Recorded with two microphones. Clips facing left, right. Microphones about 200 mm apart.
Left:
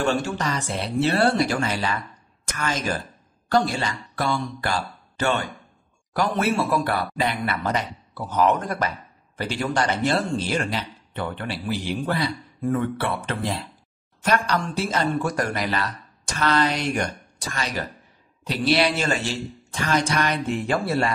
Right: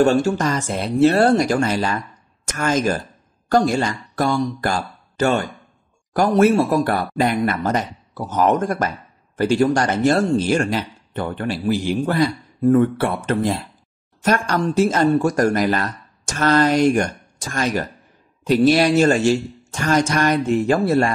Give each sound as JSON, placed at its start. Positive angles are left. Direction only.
{"t": 0.0, "sound": "speech", "side_deg": -40}